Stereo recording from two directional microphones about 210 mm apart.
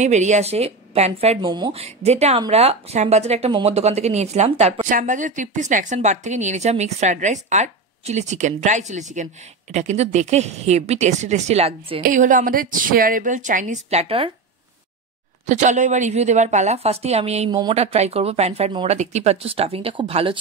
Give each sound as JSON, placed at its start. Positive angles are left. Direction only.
{"t": 0.0, "sound": "speech", "side_deg": -35}
{"t": 15.4, "sound": "speech", "side_deg": -35}